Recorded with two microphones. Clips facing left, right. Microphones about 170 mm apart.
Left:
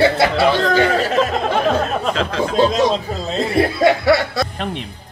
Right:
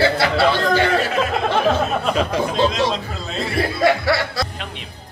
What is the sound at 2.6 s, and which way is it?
Speech, 40° left (ahead or behind).